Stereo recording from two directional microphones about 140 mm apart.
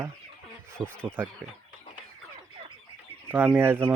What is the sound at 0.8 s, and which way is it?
Speech, centre (ahead or behind).